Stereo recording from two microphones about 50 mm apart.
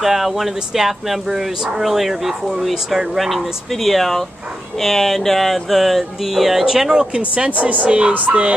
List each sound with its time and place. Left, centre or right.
0.0 s speech: centre
7.2 s a woman's voice: right